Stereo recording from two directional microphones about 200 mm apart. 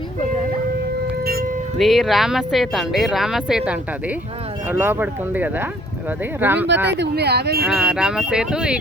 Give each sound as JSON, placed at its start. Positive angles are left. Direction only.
{"t": 1.0, "sound": "siren", "side_deg": -50}
{"t": 1.8, "sound": "speech", "side_deg": 0}
{"t": 4.7, "sound": "speech", "side_deg": -10}
{"t": 7.0, "sound": "speech", "side_deg": -55}
{"t": 7.6, "sound": "speech", "side_deg": -5}